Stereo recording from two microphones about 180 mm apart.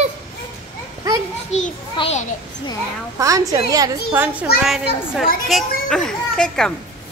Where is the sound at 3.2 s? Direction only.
20° right (ahead or behind); by 6.7 s 5° left (ahead or behind).